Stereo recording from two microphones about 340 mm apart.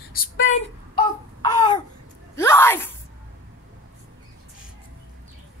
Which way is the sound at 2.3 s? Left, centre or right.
Centre.